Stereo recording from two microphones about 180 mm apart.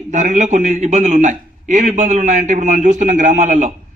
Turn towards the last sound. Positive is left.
turn(degrees=-45)  # may be behind; listen again after turning